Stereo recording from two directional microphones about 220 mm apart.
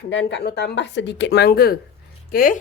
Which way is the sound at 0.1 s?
55° left (ahead or behind).